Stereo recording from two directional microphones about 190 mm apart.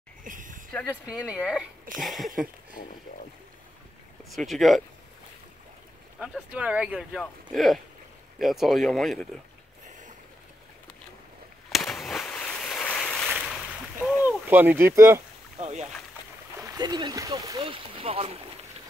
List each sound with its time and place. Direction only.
0.2 s a sound: 45° right (ahead or behind)
0.7 s speech: 5° right (ahead or behind)
4.3 s speech: centre (ahead or behind)
6.1 s speech: 5° right (ahead or behind)
9.8 s a sound: 40° right (ahead or behind)
11.7 s a sound: centre (ahead or behind)
14.0 s speech: 10° right (ahead or behind)
15.6 s speech: 35° right (ahead or behind)
16.5 s speech: 20° right (ahead or behind)